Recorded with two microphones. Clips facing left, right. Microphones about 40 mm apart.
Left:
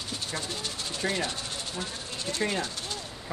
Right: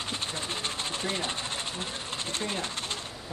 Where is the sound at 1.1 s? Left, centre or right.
Right.